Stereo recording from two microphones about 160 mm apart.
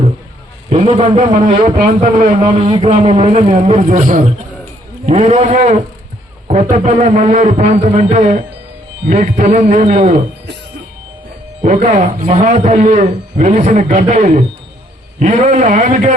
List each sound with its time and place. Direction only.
0.7 s a man's voice: 45° right (ahead or behind)
1.6 s speech: 55° right (ahead or behind)
2.4 s speech: 35° right (ahead or behind)
3.8 s a man's voice: 55° right (ahead or behind)
11.6 s a man's voice: 50° right (ahead or behind)